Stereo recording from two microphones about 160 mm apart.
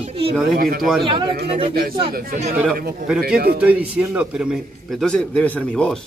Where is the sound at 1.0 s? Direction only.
30° right (ahead or behind).